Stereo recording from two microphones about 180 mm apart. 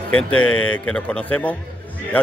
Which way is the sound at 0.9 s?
5° left (ahead or behind).